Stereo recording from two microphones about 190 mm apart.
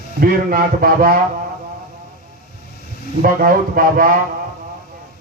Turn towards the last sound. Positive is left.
turn(degrees=-50)  # may be behind; listen again after turning